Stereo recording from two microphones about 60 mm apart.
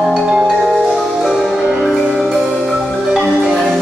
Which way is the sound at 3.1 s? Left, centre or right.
Centre.